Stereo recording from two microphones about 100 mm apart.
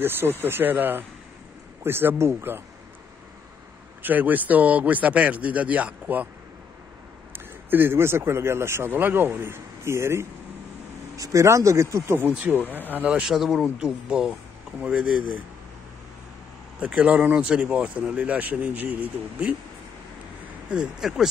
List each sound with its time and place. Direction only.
0.0 s speech: 20° right (ahead or behind)
4.0 s speech: 15° right (ahead or behind)
7.3 s speech: 20° right (ahead or behind)
13.2 s speech: 5° right (ahead or behind)
16.8 s speech: 15° right (ahead or behind)
20.7 s speech: 5° right (ahead or behind)